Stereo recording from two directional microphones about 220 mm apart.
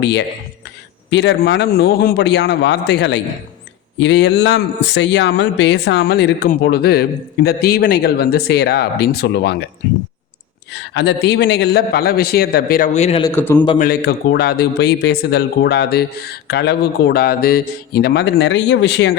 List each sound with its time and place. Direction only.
0.0 s speech: 50° left (ahead or behind)
10.7 s speech: 50° left (ahead or behind); by 13.2 s 30° left (ahead or behind)
13.2 s a man's voice: 10° left (ahead or behind)
13.7 s speech: 45° left (ahead or behind)